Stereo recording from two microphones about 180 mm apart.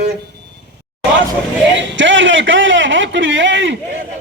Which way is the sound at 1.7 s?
90° right.